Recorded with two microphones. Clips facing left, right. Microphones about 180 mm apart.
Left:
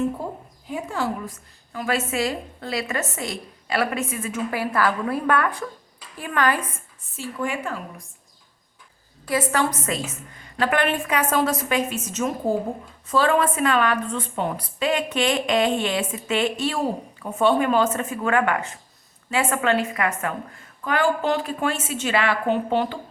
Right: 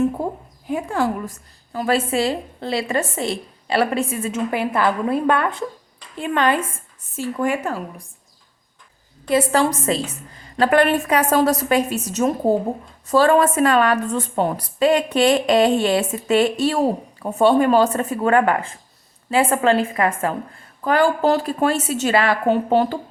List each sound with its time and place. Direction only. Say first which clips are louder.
0.7 s a sound: right 6 dB; 55° right (ahead or behind)
1.7 s a woman's voice: right 5 dB; 30° right (ahead or behind)
7.4 s speech: right 5 dB; 45° right (ahead or behind)
9.3 s a woman's voice: right 5 dB; 30° right (ahead or behind)